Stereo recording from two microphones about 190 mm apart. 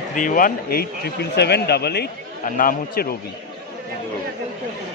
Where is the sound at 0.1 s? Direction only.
45° left (ahead or behind).